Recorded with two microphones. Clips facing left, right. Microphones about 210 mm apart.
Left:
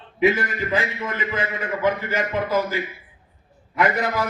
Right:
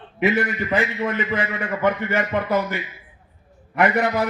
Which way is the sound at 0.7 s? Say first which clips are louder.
Right 5 dB; 65° right (ahead or behind).